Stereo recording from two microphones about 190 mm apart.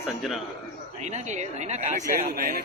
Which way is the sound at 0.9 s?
35° right (ahead or behind).